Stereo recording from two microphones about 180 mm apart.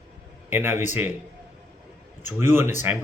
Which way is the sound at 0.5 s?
10° right (ahead or behind).